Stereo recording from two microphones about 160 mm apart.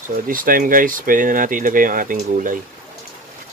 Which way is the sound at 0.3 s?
60° right (ahead or behind).